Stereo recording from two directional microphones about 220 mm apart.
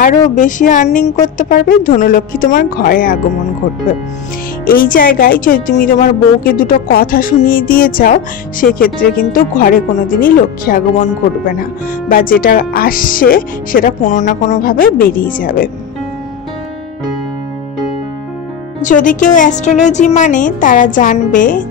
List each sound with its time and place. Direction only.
0.4 s speech: 35° left (ahead or behind)
4.6 s speech: 40° left (ahead or behind)
18.8 s speech: 35° left (ahead or behind)